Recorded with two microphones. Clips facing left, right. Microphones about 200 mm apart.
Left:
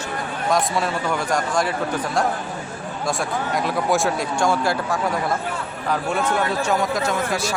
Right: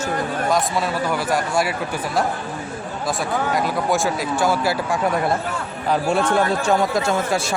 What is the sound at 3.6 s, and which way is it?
Speech, centre (ahead or behind).